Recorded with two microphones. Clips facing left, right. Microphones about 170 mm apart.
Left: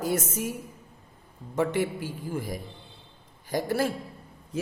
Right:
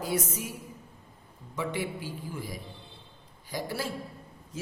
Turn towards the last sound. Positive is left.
turn(degrees=50)  # may be behind; listen again after turning